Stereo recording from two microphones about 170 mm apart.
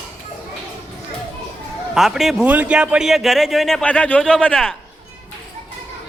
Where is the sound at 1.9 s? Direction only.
Centre (ahead or behind).